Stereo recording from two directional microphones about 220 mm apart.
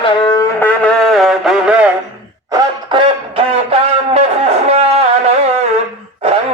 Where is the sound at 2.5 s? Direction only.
20° right (ahead or behind).